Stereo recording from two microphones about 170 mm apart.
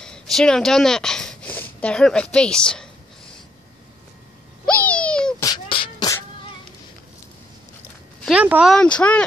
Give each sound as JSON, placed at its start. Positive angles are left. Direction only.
{"t": 0.0, "sound": "speech", "side_deg": 5}
{"t": 4.6, "sound": "a sound", "side_deg": 10}
{"t": 5.4, "sound": "beatboxing", "side_deg": 25}
{"t": 8.3, "sound": "speech", "side_deg": -5}
{"t": 8.7, "sound": "speech", "side_deg": 5}